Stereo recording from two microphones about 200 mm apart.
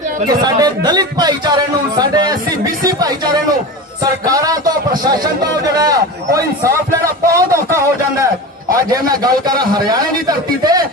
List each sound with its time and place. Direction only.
0.3 s speech: 20° right (ahead or behind)
4.3 s a sound: 15° right (ahead or behind)
8.9 s speech: 20° right (ahead or behind)